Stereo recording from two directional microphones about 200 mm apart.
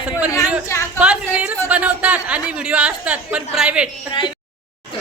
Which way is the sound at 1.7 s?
5° right (ahead or behind).